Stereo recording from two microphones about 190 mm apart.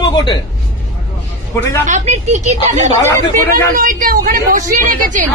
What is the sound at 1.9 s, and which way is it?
A woman's voice, 40° right (ahead or behind).